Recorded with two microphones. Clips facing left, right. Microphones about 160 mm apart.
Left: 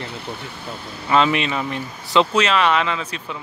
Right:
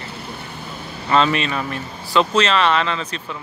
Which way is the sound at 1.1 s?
15° left (ahead or behind).